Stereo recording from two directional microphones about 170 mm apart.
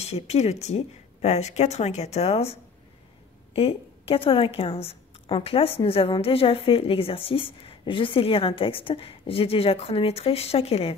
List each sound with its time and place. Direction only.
0.0 s a woman's voice: 40° left (ahead or behind)
3.5 s a woman's voice: 35° left (ahead or behind)